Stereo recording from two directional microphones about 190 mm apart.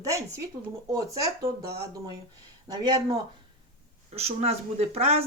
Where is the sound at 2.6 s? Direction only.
25° right (ahead or behind).